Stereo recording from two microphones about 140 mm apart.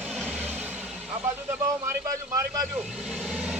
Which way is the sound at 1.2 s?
20° right (ahead or behind).